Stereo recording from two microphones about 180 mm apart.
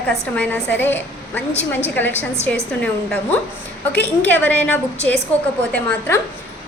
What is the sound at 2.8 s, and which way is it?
A woman's voice, 5° left (ahead or behind).